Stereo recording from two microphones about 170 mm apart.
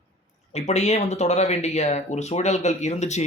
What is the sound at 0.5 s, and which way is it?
Speech, 40° left (ahead or behind).